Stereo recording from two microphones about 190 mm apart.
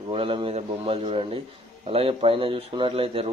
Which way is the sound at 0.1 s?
30° right (ahead or behind).